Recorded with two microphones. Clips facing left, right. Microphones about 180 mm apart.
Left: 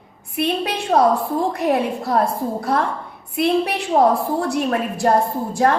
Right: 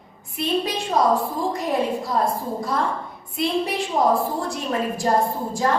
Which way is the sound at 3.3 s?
65° left (ahead or behind).